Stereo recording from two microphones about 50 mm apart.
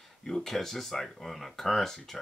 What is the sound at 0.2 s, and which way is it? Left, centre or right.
Speech, centre.